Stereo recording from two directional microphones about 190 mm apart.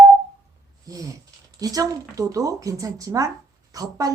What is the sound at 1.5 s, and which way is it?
A woman's voice, 20° right (ahead or behind).